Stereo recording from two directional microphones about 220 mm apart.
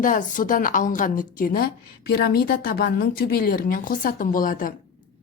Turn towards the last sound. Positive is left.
turn(degrees=40)  # may be behind; listen again after turning